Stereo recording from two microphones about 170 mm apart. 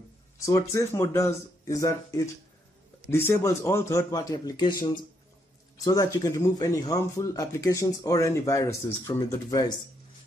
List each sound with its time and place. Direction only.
0.4 s speech: 20° left (ahead or behind)